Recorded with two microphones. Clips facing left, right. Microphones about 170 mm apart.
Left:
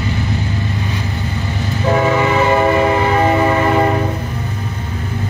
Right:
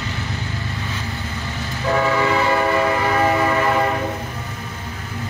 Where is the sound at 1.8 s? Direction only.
20° left (ahead or behind).